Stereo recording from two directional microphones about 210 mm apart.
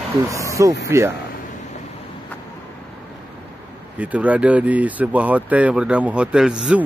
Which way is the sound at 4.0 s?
5° right (ahead or behind).